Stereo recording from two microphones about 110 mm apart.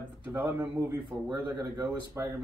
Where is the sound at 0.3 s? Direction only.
25° right (ahead or behind).